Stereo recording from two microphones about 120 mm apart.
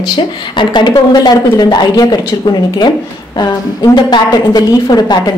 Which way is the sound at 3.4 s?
35° left (ahead or behind).